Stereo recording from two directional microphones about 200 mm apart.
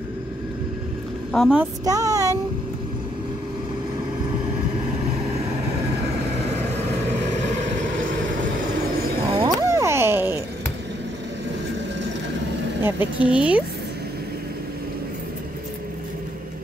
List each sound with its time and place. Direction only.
1.3 s a woman's voice: centre (ahead or behind)
1.9 s a sound: 15° right (ahead or behind)
9.3 s music: 25° right (ahead or behind)
9.7 s music: 15° right (ahead or behind)
12.8 s speech: 10° right (ahead or behind)